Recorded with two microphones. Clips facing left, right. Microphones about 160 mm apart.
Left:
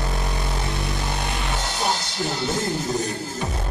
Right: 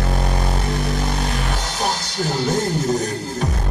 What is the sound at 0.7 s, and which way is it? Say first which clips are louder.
Vehicle: right 5 dB; 45° right (ahead or behind).